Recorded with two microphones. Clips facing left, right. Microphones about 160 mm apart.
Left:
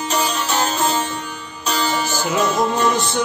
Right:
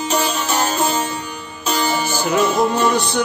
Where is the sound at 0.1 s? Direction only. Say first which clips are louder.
Right 1 dB; centre (ahead or behind).